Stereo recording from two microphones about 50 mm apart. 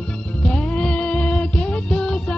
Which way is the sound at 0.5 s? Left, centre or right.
Left.